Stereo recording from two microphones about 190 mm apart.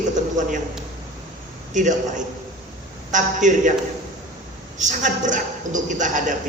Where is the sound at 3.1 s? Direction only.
40° right (ahead or behind).